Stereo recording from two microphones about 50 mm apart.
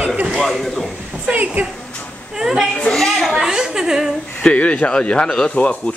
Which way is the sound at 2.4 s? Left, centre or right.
Centre.